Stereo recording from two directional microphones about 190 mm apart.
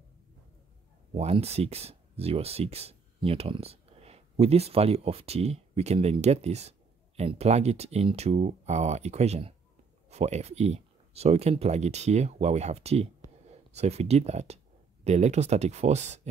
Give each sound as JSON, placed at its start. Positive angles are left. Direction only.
{"t": 1.1, "sound": "speech", "side_deg": -35}